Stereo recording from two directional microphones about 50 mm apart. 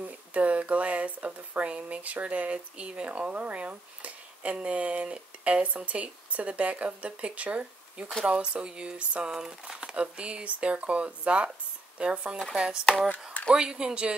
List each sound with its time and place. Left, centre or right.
0.0 s speech: right
13.1 s a sound: left
13.6 s speech: centre